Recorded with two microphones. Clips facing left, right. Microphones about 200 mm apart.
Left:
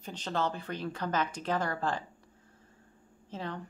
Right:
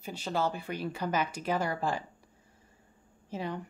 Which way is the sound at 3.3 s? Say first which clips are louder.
Right 3 dB; 10° right (ahead or behind).